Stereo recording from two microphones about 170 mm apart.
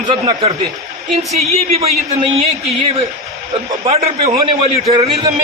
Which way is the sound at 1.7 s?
35° right (ahead or behind).